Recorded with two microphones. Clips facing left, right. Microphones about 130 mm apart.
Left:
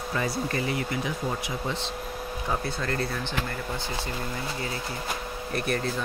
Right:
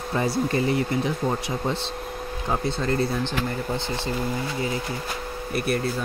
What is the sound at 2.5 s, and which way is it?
Speech, 25° right (ahead or behind).